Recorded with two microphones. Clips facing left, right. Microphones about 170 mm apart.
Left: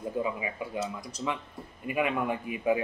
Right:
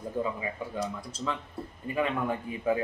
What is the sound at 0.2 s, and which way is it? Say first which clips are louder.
A man's voice: right 2 dB; 15° left (ahead or behind).